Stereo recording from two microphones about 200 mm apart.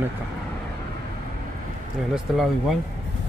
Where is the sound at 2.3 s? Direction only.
Centre (ahead or behind).